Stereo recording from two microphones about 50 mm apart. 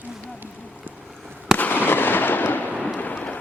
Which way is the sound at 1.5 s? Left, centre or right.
Left.